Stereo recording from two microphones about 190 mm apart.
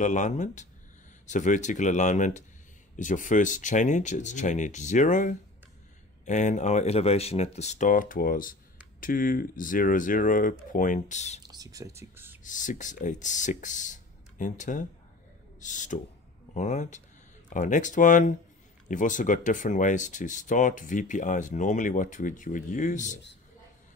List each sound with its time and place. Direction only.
0.0 s speech: 40° left (ahead or behind)
11.4 s speech: 20° right (ahead or behind)
12.4 s speech: 40° left (ahead or behind)